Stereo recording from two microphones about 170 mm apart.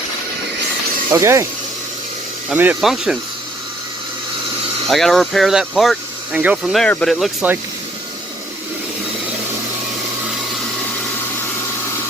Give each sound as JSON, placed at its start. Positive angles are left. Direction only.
{"t": 1.1, "sound": "speech", "side_deg": -15}
{"t": 2.5, "sound": "speech", "side_deg": -10}
{"t": 4.9, "sound": "speech", "side_deg": 0}